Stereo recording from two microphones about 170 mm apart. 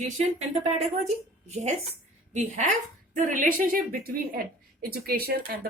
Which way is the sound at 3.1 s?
50° right (ahead or behind).